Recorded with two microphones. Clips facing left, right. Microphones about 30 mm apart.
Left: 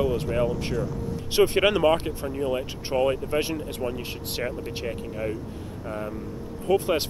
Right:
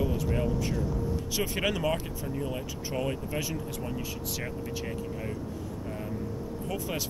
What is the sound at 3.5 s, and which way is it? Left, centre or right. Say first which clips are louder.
Speech: left 5 dB; left.